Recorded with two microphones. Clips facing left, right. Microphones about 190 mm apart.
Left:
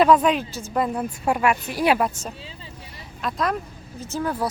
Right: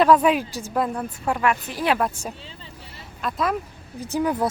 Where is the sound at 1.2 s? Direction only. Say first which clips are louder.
Left 1 dB; 15° left (ahead or behind).